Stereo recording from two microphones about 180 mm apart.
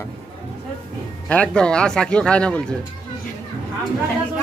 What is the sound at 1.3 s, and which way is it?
Speech, 5° left (ahead or behind).